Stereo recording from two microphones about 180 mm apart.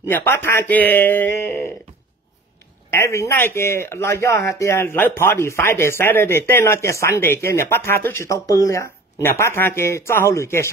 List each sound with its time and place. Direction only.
0.1 s speech: 10° left (ahead or behind)
2.9 s speech: 15° left (ahead or behind)